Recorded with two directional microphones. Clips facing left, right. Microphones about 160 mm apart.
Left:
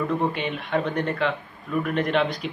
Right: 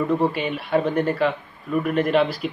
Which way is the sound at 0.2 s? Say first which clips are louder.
Right 3 dB; 5° right (ahead or behind).